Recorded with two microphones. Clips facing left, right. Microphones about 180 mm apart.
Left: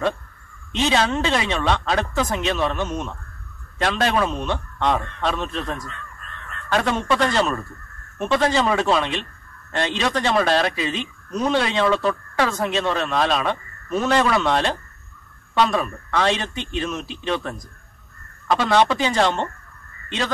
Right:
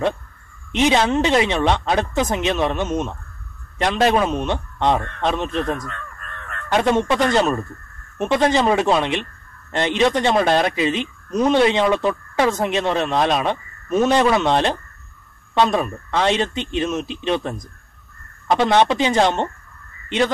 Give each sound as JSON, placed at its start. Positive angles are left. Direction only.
{"t": 0.7, "sound": "speech", "side_deg": -20}
{"t": 5.8, "sound": "crow", "side_deg": -55}
{"t": 6.7, "sound": "speech", "side_deg": -20}